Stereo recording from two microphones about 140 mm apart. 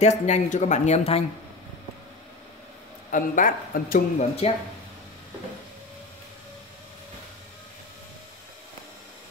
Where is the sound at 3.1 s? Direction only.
70° left (ahead or behind).